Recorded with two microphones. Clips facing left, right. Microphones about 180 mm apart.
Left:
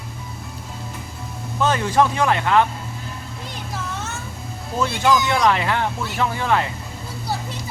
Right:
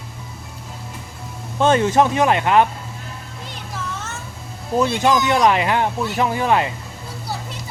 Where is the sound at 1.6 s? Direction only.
25° right (ahead or behind).